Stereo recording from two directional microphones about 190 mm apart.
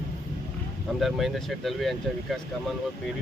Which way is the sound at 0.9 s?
Centre (ahead or behind).